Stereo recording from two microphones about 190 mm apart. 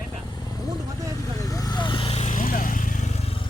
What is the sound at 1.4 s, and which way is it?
Vehicle, 20° left (ahead or behind).